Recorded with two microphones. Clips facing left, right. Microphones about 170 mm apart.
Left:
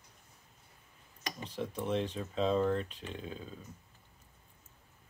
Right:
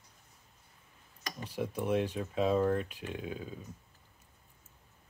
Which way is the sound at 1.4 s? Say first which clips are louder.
Right 3 dB; 10° right (ahead or behind).